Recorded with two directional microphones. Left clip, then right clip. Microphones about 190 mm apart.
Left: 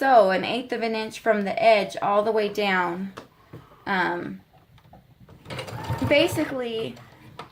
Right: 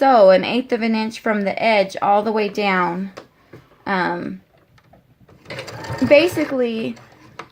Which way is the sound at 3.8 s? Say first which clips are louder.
Right 4 dB; 50° right (ahead or behind).